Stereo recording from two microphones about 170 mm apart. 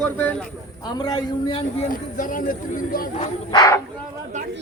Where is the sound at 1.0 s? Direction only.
25° left (ahead or behind); by 3.2 s 55° left (ahead or behind).